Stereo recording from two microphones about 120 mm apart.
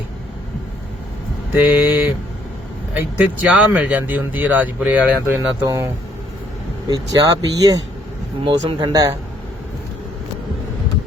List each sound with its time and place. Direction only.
1.5 s speech: 15° right (ahead or behind)
5.6 s speech: 30° right (ahead or behind)